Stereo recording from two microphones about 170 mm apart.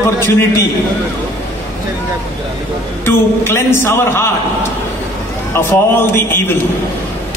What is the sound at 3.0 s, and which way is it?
A man's voice, 15° left (ahead or behind).